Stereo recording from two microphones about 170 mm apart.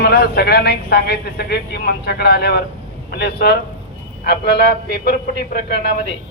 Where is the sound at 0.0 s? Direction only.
65° left (ahead or behind).